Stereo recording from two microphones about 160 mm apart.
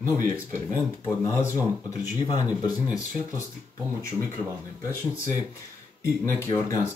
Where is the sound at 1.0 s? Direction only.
15° left (ahead or behind).